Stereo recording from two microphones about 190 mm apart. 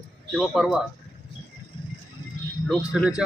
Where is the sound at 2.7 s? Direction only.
5° right (ahead or behind).